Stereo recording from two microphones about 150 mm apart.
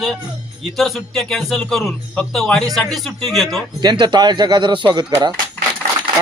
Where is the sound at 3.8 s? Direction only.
30° right (ahead or behind).